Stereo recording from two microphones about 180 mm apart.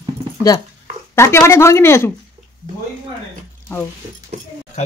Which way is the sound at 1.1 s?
15° left (ahead or behind).